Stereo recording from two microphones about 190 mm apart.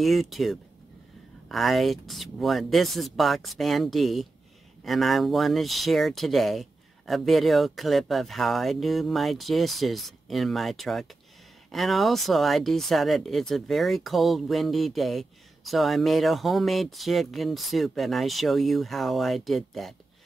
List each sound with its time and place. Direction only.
0.0 s speech: centre (ahead or behind)